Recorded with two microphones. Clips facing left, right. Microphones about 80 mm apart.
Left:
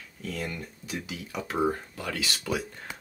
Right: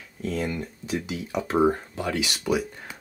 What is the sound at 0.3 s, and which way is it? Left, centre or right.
Speech, right.